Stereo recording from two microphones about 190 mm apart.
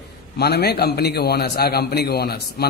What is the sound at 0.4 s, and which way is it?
A man's voice, 60° left (ahead or behind).